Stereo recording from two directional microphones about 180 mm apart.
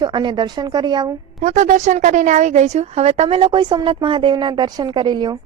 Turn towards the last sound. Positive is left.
turn(degrees=-25)  # may be behind; listen again after turning